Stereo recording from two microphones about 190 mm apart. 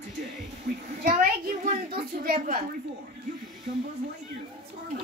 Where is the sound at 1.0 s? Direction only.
45° right (ahead or behind).